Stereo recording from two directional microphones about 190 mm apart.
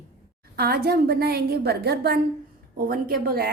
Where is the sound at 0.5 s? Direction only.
55° right (ahead or behind).